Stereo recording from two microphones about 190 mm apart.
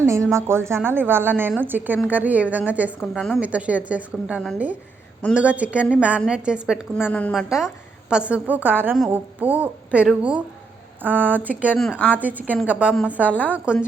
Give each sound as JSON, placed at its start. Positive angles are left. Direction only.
{"t": 0.0, "sound": "a woman's voice", "side_deg": -15}
{"t": 3.2, "sound": "a woman's voice", "side_deg": 5}
{"t": 11.7, "sound": "a woman's voice", "side_deg": 5}
{"t": 12.1, "sound": "a woman's voice", "side_deg": -10}